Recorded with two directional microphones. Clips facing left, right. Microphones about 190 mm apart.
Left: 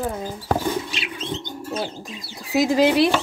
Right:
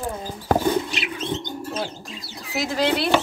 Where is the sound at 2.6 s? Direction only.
15° left (ahead or behind).